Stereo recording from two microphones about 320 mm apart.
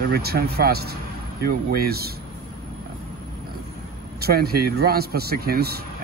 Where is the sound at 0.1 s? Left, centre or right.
Right.